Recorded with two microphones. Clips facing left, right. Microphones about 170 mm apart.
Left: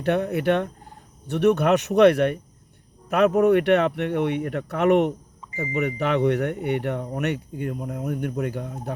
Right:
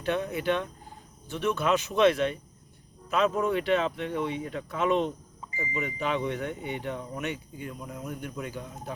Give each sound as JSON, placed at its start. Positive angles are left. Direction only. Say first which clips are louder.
{"t": 0.0, "sound": "speech", "louder": "left 6 dB", "side_deg": 65}